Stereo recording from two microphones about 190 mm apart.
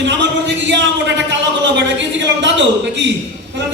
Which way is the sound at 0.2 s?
70° right (ahead or behind).